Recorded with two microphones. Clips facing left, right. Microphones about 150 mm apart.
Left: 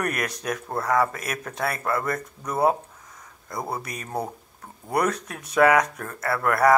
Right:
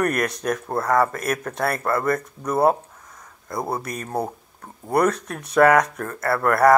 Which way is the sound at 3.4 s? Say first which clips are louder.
Right 4 dB; 30° right (ahead or behind).